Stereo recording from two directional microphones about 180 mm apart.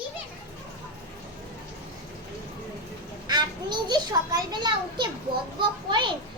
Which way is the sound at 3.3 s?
25° right (ahead or behind).